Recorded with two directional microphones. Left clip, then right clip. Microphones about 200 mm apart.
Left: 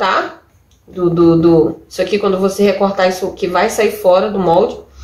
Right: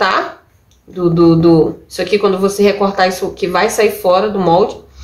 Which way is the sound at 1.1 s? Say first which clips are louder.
Even; 20° right (ahead or behind).